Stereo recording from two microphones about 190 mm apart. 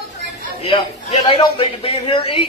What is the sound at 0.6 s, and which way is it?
A man's voice, 30° left (ahead or behind).